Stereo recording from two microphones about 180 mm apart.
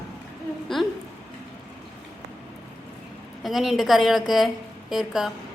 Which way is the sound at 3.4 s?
Centre (ahead or behind).